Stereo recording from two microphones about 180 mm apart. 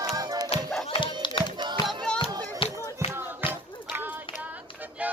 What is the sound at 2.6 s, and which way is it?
Music, 35° left (ahead or behind).